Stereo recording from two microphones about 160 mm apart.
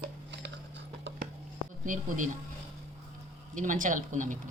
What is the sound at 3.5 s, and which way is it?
Speech, 55° right (ahead or behind).